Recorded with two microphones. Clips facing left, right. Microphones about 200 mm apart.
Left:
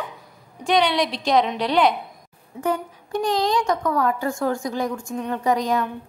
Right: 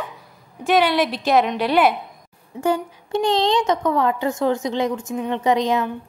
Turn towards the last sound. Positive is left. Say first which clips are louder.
# right 2 dB
turn(degrees=-25)  # may be behind; listen again after turning